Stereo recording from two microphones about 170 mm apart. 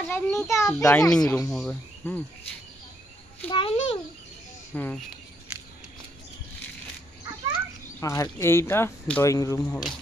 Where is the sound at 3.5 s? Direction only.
35° left (ahead or behind).